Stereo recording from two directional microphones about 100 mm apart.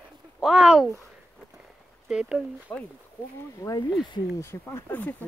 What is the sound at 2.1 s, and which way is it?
Speech, 5° right (ahead or behind).